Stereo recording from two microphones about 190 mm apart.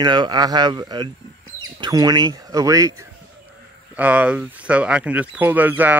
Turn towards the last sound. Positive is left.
turn(degrees=-10)  # may be behind; listen again after turning